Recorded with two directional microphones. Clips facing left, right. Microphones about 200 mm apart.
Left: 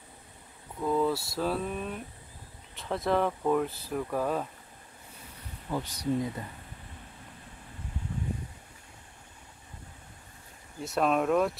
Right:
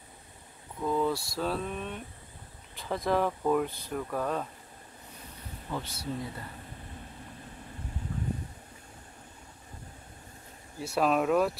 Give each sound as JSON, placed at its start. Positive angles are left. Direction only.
{"t": 0.8, "sound": "speech", "side_deg": 0}
{"t": 5.7, "sound": "speech", "side_deg": 15}
{"t": 10.8, "sound": "speech", "side_deg": 0}